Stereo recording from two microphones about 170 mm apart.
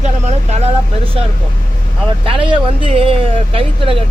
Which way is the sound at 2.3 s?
30° right (ahead or behind).